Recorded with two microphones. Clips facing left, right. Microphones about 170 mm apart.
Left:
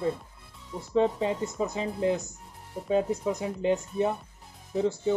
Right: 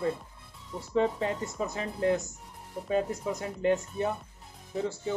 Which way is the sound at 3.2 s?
15° left (ahead or behind).